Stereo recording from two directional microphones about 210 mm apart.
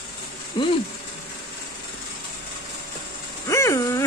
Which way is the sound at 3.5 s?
15° left (ahead or behind).